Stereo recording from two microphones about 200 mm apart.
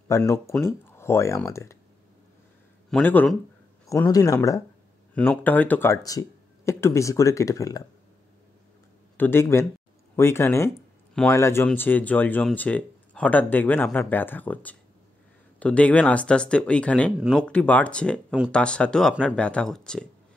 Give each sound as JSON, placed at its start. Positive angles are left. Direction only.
{"t": 0.2, "sound": "speech", "side_deg": 15}
{"t": 2.9, "sound": "speech", "side_deg": 10}
{"t": 9.1, "sound": "speech", "side_deg": 10}